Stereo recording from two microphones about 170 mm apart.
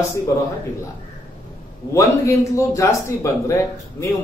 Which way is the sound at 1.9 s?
20° left (ahead or behind).